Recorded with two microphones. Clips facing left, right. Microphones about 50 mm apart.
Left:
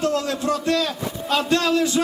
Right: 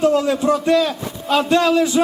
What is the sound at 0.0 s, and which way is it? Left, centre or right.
A man's voice, centre.